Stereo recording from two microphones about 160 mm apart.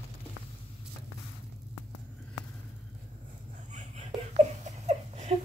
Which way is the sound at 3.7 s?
45° right (ahead or behind).